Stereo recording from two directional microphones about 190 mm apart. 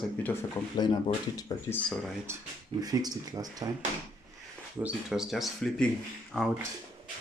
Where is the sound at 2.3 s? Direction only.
15° right (ahead or behind).